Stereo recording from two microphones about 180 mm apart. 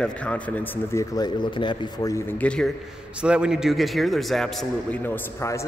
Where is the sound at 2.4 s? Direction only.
5° left (ahead or behind).